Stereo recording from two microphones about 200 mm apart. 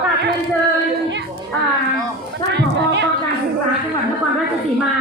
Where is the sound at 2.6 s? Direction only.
60° right (ahead or behind).